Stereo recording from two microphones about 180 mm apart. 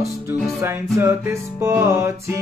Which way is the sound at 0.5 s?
15° right (ahead or behind).